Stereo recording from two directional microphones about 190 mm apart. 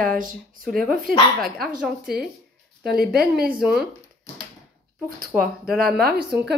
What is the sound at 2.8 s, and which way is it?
A woman's voice, 55° right (ahead or behind).